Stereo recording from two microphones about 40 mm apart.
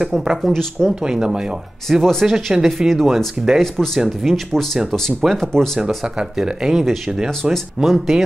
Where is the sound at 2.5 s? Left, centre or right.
Centre.